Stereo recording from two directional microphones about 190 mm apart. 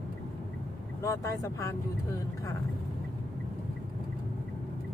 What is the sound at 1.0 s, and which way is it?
Speech, 15° left (ahead or behind).